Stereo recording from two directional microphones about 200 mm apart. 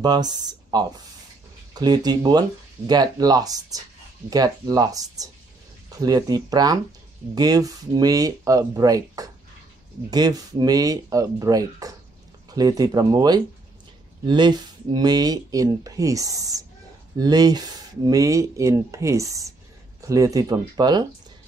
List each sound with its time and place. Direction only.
0.0 s speech: 20° right (ahead or behind)